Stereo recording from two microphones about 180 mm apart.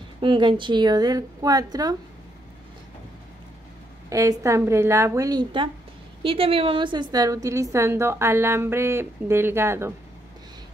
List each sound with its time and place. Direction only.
0.2 s a woman's voice: 25° right (ahead or behind)
4.1 s a woman's voice: 15° right (ahead or behind)